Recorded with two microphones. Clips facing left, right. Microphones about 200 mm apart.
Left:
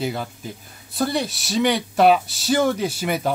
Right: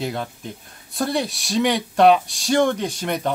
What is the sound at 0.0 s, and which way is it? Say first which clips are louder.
Speech: left 1 dB; centre (ahead or behind).